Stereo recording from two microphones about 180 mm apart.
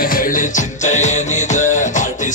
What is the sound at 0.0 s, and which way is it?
Music, 50° left (ahead or behind).